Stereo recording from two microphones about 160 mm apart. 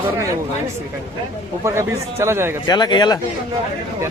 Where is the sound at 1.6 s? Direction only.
15° right (ahead or behind).